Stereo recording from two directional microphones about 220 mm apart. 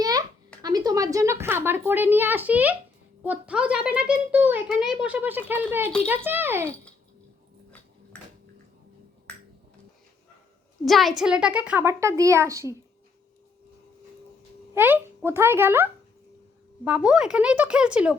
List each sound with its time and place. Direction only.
0.0 s a sound: 15° right (ahead or behind)
0.6 s a child's voice: 15° right (ahead or behind)
10.8 s a child's voice: centre (ahead or behind)
14.7 s a child's voice: 10° right (ahead or behind)